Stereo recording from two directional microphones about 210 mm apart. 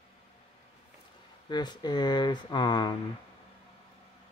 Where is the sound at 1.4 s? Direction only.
20° left (ahead or behind).